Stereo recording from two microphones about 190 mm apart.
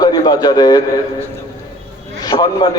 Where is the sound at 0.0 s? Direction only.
20° left (ahead or behind).